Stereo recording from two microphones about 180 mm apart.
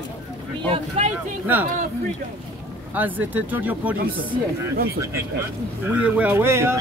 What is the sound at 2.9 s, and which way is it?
Speech, 10° right (ahead or behind).